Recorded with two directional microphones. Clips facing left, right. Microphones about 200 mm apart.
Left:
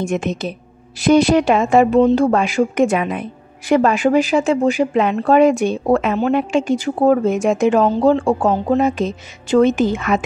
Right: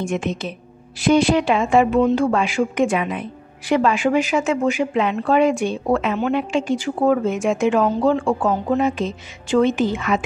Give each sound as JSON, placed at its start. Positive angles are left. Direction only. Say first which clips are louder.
{"t": 0.0, "sound": "a woman's voice", "louder": "left 3 dB", "side_deg": 40}